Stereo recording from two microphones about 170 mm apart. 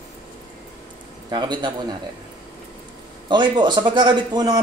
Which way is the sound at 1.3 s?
25° right (ahead or behind).